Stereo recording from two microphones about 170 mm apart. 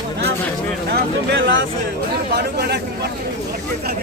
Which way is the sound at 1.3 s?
90° right.